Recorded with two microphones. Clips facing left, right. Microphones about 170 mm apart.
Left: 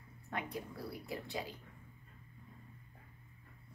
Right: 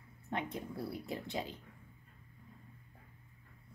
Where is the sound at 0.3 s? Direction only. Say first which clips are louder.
Right 3 dB; 25° right (ahead or behind).